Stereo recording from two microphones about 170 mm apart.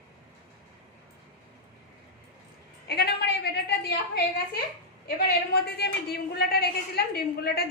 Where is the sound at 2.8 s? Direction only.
70° left (ahead or behind).